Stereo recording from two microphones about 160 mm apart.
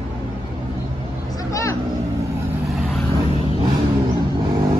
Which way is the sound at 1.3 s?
20° left (ahead or behind).